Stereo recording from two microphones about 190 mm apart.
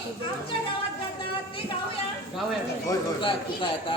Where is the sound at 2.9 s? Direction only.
25° left (ahead or behind).